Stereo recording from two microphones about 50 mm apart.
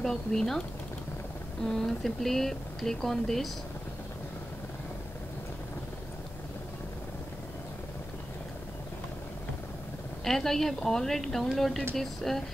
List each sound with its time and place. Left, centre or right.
0.0 s speech: centre
1.7 s speech: centre
10.2 s speech: centre